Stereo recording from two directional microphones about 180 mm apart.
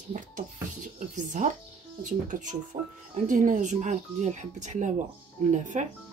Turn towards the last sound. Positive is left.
turn(degrees=-45)  # may be behind; listen again after turning